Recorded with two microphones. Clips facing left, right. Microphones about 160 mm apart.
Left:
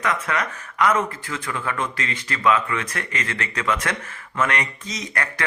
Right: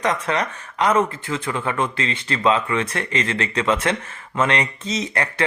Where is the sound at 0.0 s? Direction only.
30° right (ahead or behind).